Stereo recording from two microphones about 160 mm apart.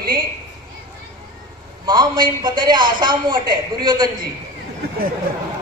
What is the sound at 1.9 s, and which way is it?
A man's voice, 25° right (ahead or behind).